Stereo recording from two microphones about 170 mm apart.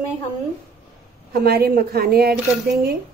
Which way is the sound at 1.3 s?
65° right (ahead or behind).